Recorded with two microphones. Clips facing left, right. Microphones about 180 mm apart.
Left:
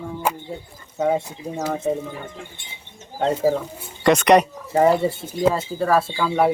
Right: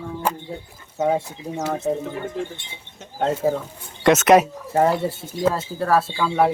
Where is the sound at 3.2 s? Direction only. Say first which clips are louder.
Left 2 dB; centre (ahead or behind).